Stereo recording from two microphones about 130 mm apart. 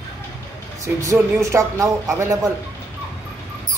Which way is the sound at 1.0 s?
20° right (ahead or behind).